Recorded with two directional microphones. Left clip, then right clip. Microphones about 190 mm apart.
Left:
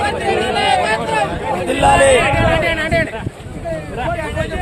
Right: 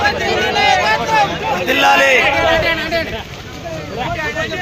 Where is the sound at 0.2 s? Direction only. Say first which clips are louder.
Right 2 dB; 60° left (ahead or behind).